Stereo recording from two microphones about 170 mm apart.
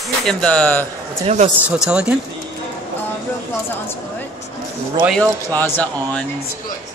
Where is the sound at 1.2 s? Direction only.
40° right (ahead or behind).